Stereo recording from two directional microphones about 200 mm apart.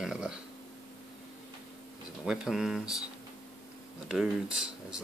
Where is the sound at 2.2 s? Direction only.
Centre (ahead or behind).